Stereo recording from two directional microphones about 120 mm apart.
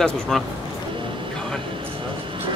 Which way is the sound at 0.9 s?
45° right (ahead or behind).